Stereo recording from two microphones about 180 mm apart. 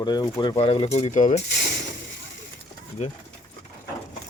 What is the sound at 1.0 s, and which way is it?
Speech, 40° left (ahead or behind).